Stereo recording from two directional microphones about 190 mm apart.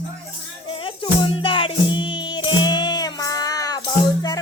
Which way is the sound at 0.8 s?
25° left (ahead or behind).